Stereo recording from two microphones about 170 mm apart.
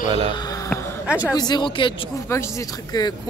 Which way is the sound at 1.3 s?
25° left (ahead or behind).